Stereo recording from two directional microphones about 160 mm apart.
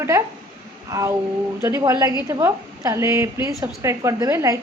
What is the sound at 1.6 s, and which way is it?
A woman's voice, 20° right (ahead or behind).